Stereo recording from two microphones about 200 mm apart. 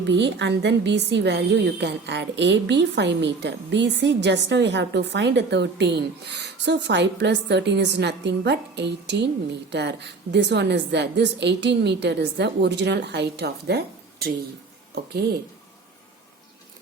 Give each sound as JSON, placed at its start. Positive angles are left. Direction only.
{"t": 0.0, "sound": "a woman's voice", "side_deg": -60}